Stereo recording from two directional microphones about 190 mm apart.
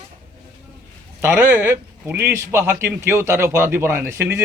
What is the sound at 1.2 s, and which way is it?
A man's voice, 10° right (ahead or behind).